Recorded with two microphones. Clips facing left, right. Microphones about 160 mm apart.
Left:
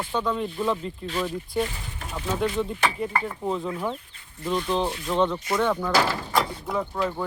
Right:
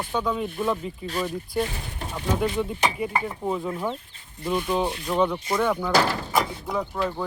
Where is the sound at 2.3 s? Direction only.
5° right (ahead or behind).